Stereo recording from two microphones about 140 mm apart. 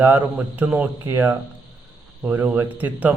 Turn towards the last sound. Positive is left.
turn(degrees=-10)  # may be behind; listen again after turning